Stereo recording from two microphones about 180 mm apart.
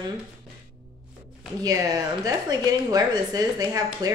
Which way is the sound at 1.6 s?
20° right (ahead or behind).